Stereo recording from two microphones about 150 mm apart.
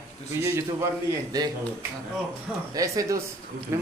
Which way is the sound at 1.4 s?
25° right (ahead or behind).